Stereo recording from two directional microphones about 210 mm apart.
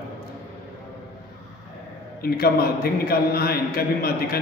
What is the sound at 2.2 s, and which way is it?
Speech, 45° left (ahead or behind).